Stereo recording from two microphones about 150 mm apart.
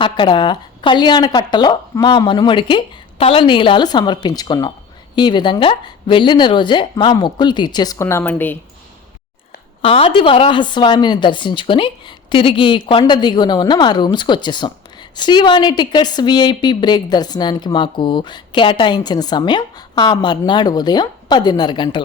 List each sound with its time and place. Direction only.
0.0 s speech: 30° left (ahead or behind); by 8.5 s 10° left (ahead or behind)
9.8 s a woman's voice: 40° left (ahead or behind)